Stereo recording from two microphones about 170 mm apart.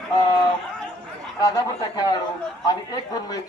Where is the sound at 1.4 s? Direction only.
20° left (ahead or behind).